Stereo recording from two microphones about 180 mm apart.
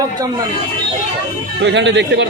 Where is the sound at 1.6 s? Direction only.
85° right.